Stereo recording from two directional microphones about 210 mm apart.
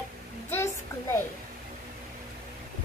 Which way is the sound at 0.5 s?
10° left (ahead or behind).